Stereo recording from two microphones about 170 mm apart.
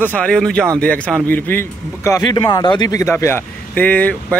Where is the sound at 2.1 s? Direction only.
20° left (ahead or behind).